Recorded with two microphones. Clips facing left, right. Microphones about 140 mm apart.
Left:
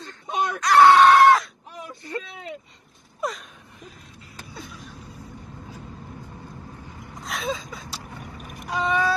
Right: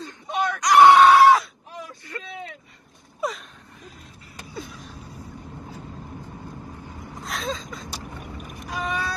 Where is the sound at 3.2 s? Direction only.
Centre (ahead or behind).